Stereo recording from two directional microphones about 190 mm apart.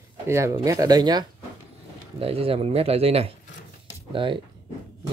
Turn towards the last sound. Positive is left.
turn(degrees=-25)  # may be behind; listen again after turning